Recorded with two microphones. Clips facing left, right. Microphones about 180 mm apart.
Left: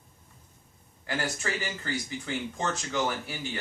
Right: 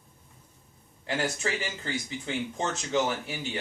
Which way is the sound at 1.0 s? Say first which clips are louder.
Right 2 dB; 20° right (ahead or behind).